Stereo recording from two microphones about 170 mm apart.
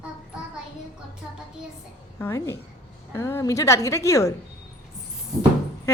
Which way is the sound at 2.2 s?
15° left (ahead or behind).